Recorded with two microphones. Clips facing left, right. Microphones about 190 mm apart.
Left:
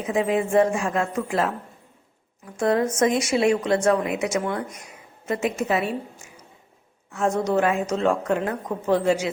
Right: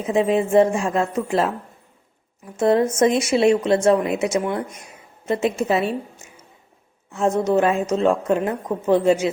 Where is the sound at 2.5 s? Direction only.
25° right (ahead or behind).